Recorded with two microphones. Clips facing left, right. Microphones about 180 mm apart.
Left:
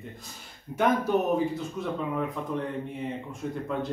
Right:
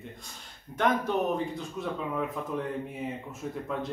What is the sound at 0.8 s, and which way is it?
Speech, 5° left (ahead or behind).